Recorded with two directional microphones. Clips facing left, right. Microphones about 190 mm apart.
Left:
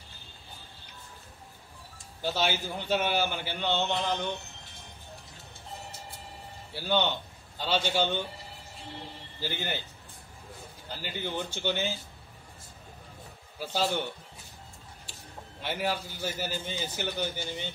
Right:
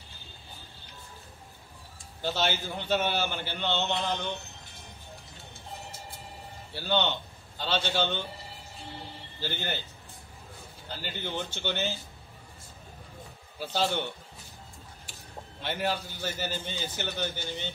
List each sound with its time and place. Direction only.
2.2 s a man's voice: 10° left (ahead or behind)
6.7 s a man's voice: 10° left (ahead or behind)
9.4 s a man's voice: 10° left (ahead or behind)
11.0 s a man's voice: 10° left (ahead or behind)
13.6 s a man's voice: 10° left (ahead or behind)
15.6 s a man's voice: 10° left (ahead or behind)